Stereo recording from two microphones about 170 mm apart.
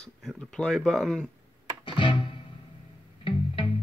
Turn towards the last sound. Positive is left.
turn(degrees=30)  # may be behind; listen again after turning